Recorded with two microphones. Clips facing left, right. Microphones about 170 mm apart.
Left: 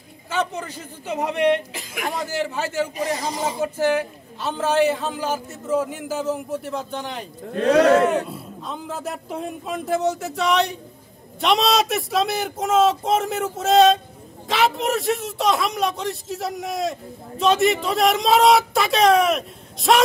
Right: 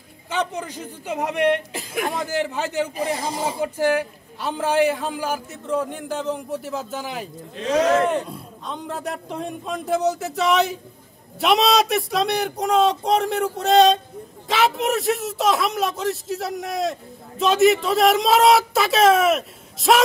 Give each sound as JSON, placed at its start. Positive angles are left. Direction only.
{"t": 0.3, "sound": "a man's voice", "side_deg": -15}
{"t": 5.5, "sound": "a man's voice", "side_deg": 5}
{"t": 7.5, "sound": "speech", "side_deg": 65}
{"t": 8.0, "sound": "a man's voice", "side_deg": 5}